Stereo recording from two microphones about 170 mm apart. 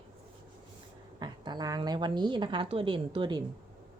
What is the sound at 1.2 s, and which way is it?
A woman's voice, 25° right (ahead or behind).